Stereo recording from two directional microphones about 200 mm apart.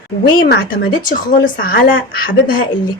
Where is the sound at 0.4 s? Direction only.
50° left (ahead or behind).